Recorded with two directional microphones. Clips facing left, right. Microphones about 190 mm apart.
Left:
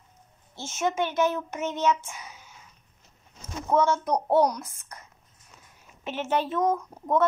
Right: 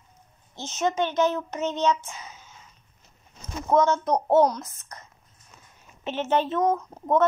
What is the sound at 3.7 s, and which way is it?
A child's voice, 10° left (ahead or behind).